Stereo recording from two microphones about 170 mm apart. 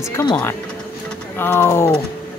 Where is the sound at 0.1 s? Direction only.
20° left (ahead or behind).